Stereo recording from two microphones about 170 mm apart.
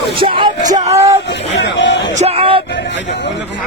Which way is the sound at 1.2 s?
90° left.